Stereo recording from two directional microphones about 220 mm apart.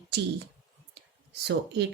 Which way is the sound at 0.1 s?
50° right (ahead or behind).